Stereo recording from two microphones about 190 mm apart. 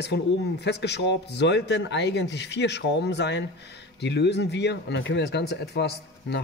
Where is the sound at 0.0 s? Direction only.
60° left (ahead or behind).